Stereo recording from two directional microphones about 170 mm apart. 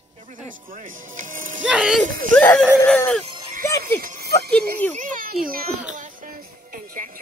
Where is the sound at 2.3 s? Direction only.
10° left (ahead or behind).